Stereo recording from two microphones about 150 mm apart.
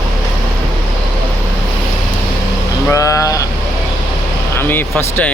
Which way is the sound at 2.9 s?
20° left (ahead or behind).